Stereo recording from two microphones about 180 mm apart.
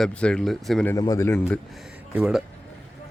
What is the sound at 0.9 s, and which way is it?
Speech, 20° left (ahead or behind).